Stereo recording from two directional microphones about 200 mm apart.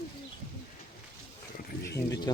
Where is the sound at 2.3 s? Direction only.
20° left (ahead or behind).